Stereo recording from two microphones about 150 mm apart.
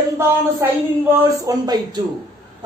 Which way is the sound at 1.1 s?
25° right (ahead or behind).